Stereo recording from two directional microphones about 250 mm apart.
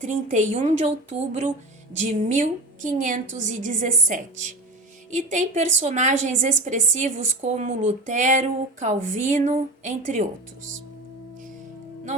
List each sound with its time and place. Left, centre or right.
0.0 s a woman's voice: right